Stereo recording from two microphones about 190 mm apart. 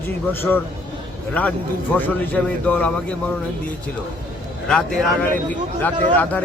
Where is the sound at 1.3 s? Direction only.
5° left (ahead or behind).